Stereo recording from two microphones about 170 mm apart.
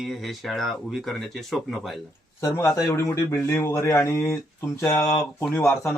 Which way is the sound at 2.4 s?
15° left (ahead or behind).